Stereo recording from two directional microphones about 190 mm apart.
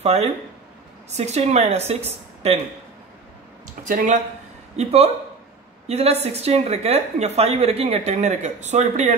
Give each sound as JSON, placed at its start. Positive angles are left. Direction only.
{"t": 0.0, "sound": "a woman's voice", "side_deg": -35}
{"t": 3.8, "sound": "speech", "side_deg": -45}
{"t": 4.7, "sound": "a woman's voice", "side_deg": -30}